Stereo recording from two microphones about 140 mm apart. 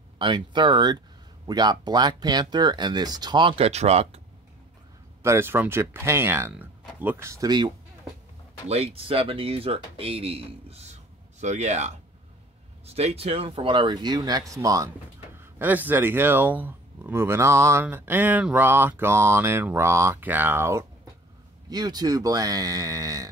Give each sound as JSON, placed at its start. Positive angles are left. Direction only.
{"t": 0.2, "sound": "speech", "side_deg": -35}
{"t": 5.2, "sound": "a sound", "side_deg": -20}
{"t": 6.5, "sound": "speech", "side_deg": -10}
{"t": 8.6, "sound": "speech", "side_deg": -45}
{"t": 17.8, "sound": "a sound", "side_deg": -15}
{"t": 21.6, "sound": "speech", "side_deg": -30}